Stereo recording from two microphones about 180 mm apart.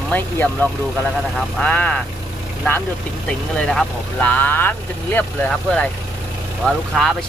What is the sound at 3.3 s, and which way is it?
Speech, 5° left (ahead or behind).